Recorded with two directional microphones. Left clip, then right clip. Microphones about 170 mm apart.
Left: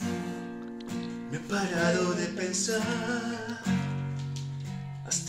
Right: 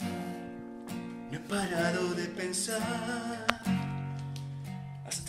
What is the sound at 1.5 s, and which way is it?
Speech, 20° right (ahead or behind).